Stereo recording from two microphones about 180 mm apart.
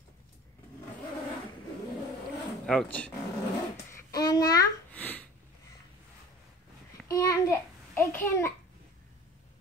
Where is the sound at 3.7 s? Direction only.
20° left (ahead or behind).